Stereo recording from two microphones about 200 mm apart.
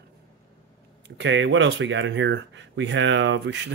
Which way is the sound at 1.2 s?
65° right (ahead or behind).